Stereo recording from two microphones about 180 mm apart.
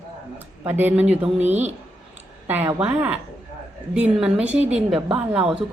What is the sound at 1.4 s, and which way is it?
Speech, 40° right (ahead or behind).